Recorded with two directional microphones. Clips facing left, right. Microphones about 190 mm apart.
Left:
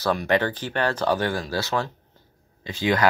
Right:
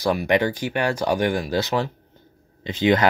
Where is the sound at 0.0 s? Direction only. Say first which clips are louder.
Right 2 dB; 10° right (ahead or behind).